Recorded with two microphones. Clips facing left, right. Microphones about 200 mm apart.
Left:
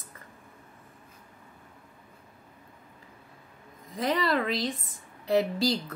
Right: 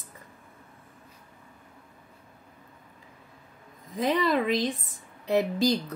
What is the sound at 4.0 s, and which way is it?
A woman's voice, 20° right (ahead or behind).